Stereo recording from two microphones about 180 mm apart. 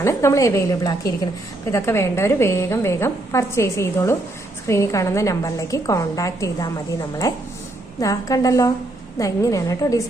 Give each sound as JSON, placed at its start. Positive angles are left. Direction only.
{"t": 0.0, "sound": "a woman's voice", "side_deg": 15}